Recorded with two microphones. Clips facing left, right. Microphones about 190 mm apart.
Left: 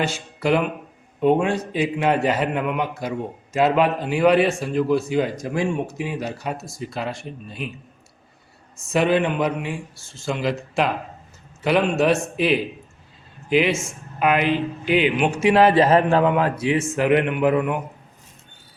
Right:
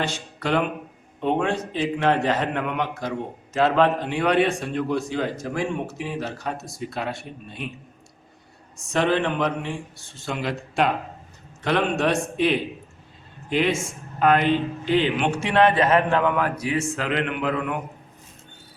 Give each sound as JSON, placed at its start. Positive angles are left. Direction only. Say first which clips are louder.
{"t": 0.0, "sound": "a man's voice", "louder": "left 4 dB", "side_deg": 10}
{"t": 8.9, "sound": "a man's voice", "louder": "left 3 dB", "side_deg": 10}
{"t": 15.5, "sound": "a man's voice", "louder": "left 2 dB", "side_deg": 30}
{"t": 16.3, "sound": "a man's voice", "louder": "left 4 dB", "side_deg": 25}